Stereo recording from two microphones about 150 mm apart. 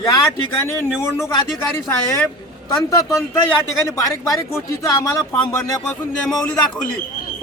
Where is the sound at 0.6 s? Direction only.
15° left (ahead or behind).